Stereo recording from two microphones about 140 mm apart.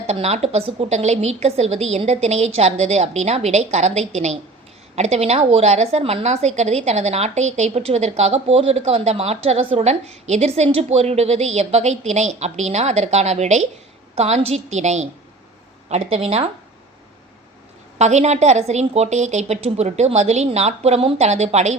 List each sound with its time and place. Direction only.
0.1 s a woman's voice: 50° right (ahead or behind)
17.9 s a woman's voice: 55° right (ahead or behind)